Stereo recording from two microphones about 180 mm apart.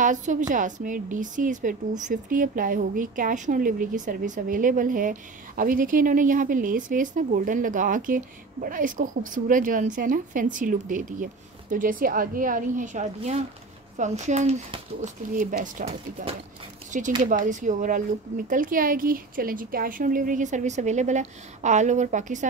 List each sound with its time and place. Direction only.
0.0 s a woman's voice: 45° right (ahead or behind)